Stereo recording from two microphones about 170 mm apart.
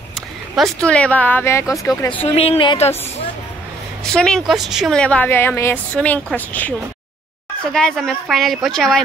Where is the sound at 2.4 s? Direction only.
30° left (ahead or behind).